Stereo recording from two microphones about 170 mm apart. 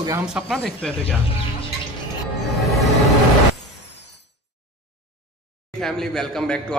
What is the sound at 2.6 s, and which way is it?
Music, centre (ahead or behind).